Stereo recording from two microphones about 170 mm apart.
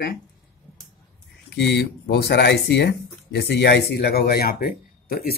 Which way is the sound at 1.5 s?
90° left.